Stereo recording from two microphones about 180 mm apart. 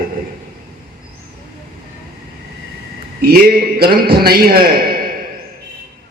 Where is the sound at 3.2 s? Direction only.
55° right (ahead or behind).